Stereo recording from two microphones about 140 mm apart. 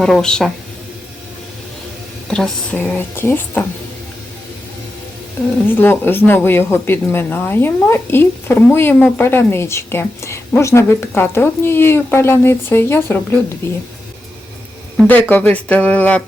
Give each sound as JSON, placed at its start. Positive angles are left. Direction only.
{"t": 0.0, "sound": "speech", "side_deg": 5}
{"t": 2.2, "sound": "speech", "side_deg": 5}
{"t": 5.6, "sound": "speech", "side_deg": 15}
{"t": 15.0, "sound": "speech", "side_deg": 10}